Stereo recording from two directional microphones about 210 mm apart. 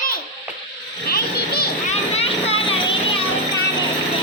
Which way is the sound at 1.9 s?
30° left (ahead or behind).